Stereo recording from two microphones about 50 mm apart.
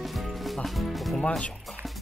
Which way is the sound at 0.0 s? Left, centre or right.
Centre.